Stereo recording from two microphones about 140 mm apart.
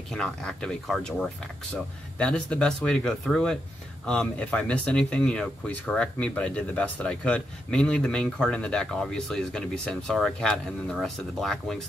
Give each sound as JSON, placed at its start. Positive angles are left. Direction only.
{"t": 0.1, "sound": "speech", "side_deg": 5}